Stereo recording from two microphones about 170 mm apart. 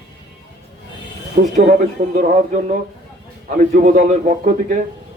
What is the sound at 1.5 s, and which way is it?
A man's voice, 50° right (ahead or behind).